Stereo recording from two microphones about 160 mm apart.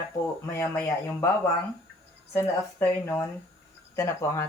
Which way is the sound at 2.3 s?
10° left (ahead or behind).